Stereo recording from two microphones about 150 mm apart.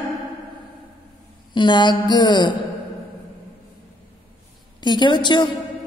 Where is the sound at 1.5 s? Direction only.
30° left (ahead or behind).